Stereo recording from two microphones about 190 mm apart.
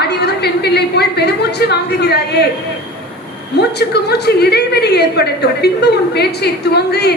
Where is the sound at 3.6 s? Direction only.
60° left (ahead or behind).